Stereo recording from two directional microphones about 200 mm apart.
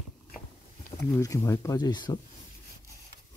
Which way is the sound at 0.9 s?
15° left (ahead or behind).